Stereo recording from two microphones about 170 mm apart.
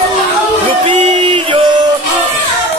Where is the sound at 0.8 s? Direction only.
30° right (ahead or behind).